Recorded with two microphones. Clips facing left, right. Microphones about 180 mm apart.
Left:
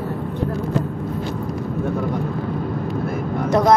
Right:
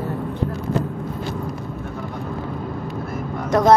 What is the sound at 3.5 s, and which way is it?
Speech, 5° left (ahead or behind).